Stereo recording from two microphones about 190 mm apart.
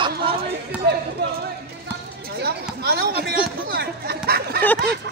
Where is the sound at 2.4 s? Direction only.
55° right (ahead or behind).